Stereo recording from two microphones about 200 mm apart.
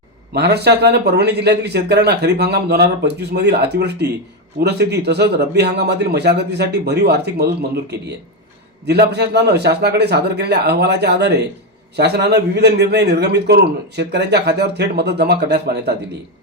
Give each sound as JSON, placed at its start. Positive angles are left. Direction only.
{"t": 0.3, "sound": "a man's voice", "side_deg": -55}